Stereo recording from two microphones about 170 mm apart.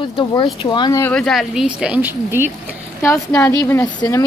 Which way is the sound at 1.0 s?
5° left (ahead or behind).